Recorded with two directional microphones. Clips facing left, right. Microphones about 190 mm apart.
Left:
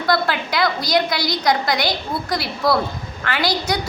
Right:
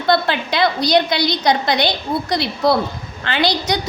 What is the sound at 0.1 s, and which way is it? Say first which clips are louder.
A woman's voice: right 3 dB; 25° right (ahead or behind).